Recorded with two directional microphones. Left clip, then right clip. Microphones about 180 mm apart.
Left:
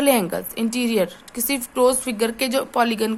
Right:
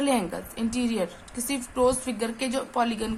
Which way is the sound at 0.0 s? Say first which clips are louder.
Left 7 dB; 50° left (ahead or behind).